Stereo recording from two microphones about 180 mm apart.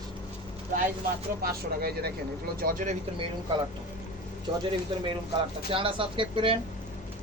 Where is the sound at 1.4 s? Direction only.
60° right (ahead or behind).